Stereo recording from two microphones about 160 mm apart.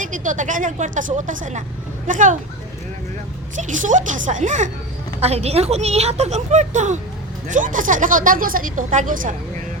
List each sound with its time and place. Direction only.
0.0 s a woman's voice: 55° right (ahead or behind)
3.5 s a woman's voice: 50° right (ahead or behind)
5.2 s a woman's voice: 40° right (ahead or behind); by 9.3 s 55° right (ahead or behind)